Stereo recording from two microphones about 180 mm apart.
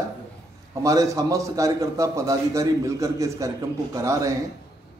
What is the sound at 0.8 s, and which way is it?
A man's voice, 20° right (ahead or behind).